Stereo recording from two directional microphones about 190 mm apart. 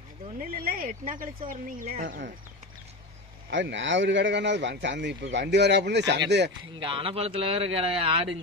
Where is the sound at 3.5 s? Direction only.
70° right (ahead or behind).